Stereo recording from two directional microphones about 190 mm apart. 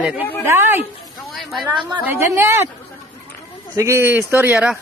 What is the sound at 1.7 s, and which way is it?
Speech, 25° right (ahead or behind).